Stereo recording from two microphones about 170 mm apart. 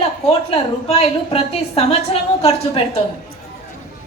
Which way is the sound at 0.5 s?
35° left (ahead or behind).